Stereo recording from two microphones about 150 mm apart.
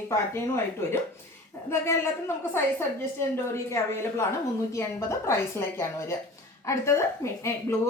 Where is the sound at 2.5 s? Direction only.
15° left (ahead or behind).